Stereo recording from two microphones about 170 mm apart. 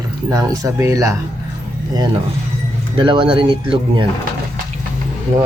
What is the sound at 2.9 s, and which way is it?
Speech, 30° right (ahead or behind).